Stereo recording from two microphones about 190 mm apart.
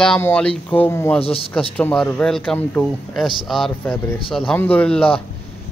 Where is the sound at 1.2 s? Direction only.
30° left (ahead or behind).